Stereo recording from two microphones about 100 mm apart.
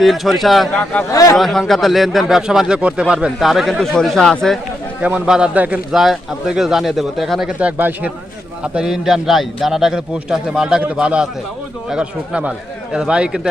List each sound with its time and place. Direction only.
0.0 s speech: centre (ahead or behind)
1.1 s a man's voice: 35° left (ahead or behind)
1.4 s speech: centre (ahead or behind)
5.0 s a man's voice: 10° right (ahead or behind)
5.9 s speech: 5° right (ahead or behind)
7.8 s speech: 20° right (ahead or behind)
8.6 s a man's voice: 10° right (ahead or behind)